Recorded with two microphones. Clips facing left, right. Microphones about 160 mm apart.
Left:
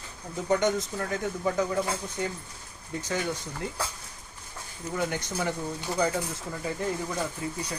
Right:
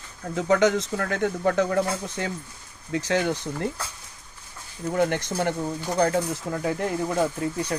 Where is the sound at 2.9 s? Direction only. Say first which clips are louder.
Right 7 dB; 90° right; by 3.7 s 65° right (ahead or behind).